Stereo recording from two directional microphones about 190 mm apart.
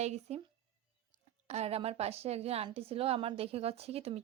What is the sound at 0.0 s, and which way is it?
Speech, 35° right (ahead or behind).